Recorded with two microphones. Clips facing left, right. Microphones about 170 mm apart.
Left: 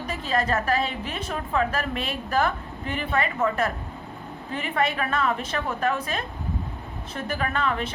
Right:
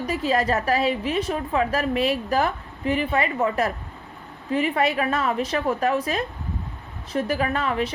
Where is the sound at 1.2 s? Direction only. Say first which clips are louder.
Right 3 dB; 35° right (ahead or behind).